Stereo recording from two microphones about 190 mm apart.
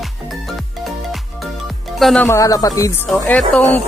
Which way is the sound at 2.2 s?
15° left (ahead or behind).